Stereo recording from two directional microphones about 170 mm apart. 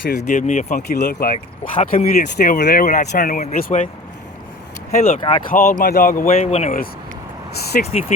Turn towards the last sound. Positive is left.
turn(degrees=55)  # may be behind; listen again after turning